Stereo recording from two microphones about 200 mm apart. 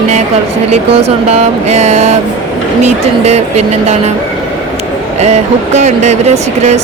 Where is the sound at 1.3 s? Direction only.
35° right (ahead or behind).